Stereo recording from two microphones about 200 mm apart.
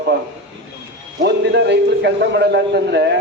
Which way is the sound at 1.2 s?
60° right (ahead or behind).